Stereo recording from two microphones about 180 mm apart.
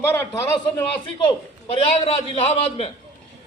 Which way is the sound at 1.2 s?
30° left (ahead or behind).